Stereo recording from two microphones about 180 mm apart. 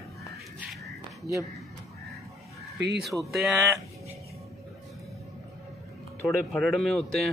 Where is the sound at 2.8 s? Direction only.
70° right (ahead or behind).